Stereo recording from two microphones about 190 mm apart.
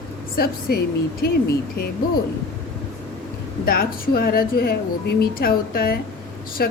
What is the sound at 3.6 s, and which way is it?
A woman's voice, 50° left (ahead or behind).